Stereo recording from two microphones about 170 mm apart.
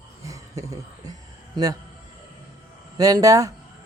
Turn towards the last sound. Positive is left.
turn(degrees=-20)  # may be behind; listen again after turning